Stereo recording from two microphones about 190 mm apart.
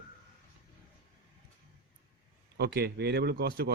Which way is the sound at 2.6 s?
55° right (ahead or behind).